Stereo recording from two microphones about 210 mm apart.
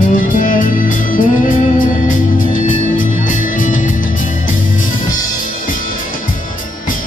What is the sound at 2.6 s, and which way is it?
Music, 40° left (ahead or behind).